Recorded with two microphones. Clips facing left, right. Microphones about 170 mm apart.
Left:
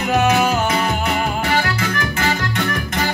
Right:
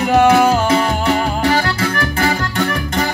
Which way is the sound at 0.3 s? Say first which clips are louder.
Right 5 dB; 35° right (ahead or behind).